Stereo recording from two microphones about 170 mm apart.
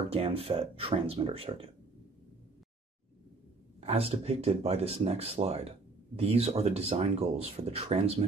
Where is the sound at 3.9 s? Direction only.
35° right (ahead or behind).